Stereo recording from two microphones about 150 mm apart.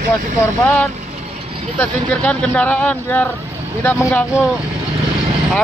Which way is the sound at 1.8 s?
10° left (ahead or behind).